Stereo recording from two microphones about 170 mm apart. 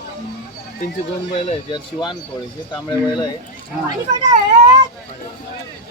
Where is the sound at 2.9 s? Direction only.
25° left (ahead or behind).